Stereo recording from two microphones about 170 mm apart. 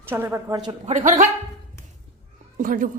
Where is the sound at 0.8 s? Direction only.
45° right (ahead or behind).